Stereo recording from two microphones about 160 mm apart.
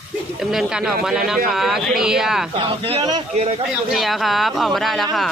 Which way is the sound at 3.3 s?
40° right (ahead or behind).